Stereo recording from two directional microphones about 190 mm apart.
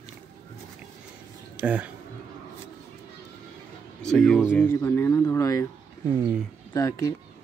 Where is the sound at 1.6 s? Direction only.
10° right (ahead or behind).